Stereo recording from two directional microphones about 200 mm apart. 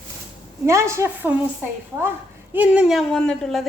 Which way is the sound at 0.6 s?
15° right (ahead or behind).